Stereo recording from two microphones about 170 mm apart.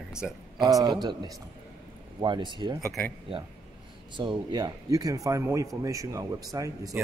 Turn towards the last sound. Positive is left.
turn(degrees=-20)  # may be behind; listen again after turning